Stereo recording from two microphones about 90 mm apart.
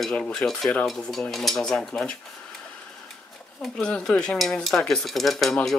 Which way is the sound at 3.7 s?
10° left (ahead or behind).